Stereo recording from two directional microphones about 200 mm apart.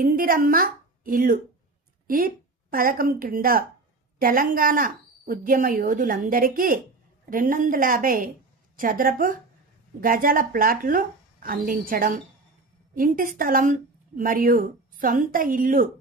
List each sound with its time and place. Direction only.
0.0 s a woman's voice: 45° right (ahead or behind)